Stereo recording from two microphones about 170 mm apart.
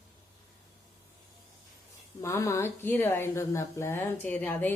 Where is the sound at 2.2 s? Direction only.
15° left (ahead or behind).